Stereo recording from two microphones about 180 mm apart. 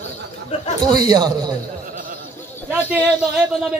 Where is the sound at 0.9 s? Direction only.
25° right (ahead or behind).